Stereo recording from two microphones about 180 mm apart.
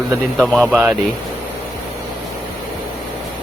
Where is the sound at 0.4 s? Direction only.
5° left (ahead or behind).